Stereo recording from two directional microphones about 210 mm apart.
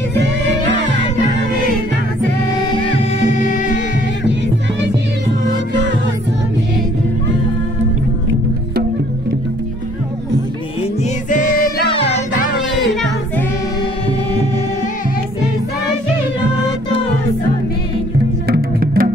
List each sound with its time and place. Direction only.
11.2 s music: 40° left (ahead or behind)
11.9 s music: 30° left (ahead or behind)
18.5 s music: 45° right (ahead or behind)